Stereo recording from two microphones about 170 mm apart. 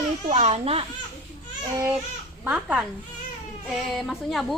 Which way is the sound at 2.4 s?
10° right (ahead or behind).